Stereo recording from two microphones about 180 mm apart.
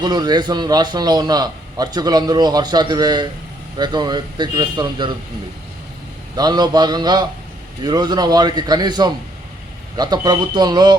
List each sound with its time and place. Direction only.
0.0 s a man's voice: 25° right (ahead or behind)
6.3 s a man's voice: 20° right (ahead or behind)